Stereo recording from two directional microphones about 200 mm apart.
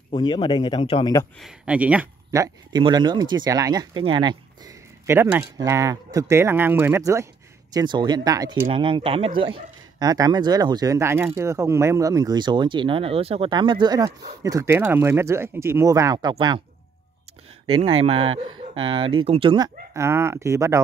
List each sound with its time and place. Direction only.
0.1 s speech: 25° left (ahead or behind)
1.4 s speech: 5° right (ahead or behind); by 16.6 s 25° right (ahead or behind)
17.7 s speech: 30° right (ahead or behind)